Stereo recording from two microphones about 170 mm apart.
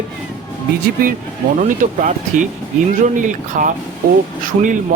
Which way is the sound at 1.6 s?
50° right (ahead or behind).